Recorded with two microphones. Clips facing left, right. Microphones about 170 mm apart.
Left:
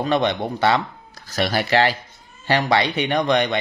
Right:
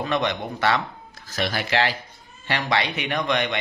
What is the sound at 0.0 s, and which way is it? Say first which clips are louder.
A man's voice: left 4 dB; 30° left (ahead or behind).